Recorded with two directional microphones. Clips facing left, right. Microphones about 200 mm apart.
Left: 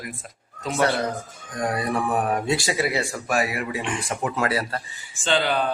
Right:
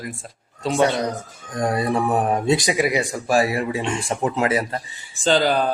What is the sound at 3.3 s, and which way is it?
A man's voice, 30° right (ahead or behind).